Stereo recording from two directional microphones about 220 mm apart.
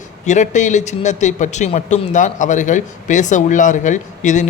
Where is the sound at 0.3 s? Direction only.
35° left (ahead or behind).